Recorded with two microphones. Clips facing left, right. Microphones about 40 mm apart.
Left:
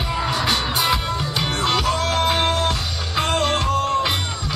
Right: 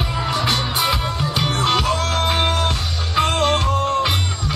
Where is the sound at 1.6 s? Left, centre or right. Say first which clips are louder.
Right 2 dB; centre.